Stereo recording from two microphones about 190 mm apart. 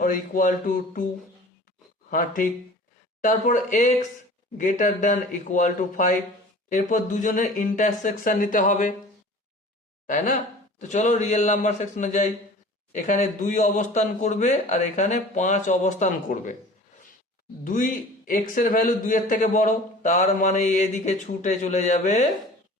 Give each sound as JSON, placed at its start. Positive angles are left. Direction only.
{"t": 0.0, "sound": "speech", "side_deg": 45}
{"t": 2.0, "sound": "a man's voice", "side_deg": 45}
{"t": 10.1, "sound": "a man's voice", "side_deg": 40}
{"t": 17.6, "sound": "a man's voice", "side_deg": 45}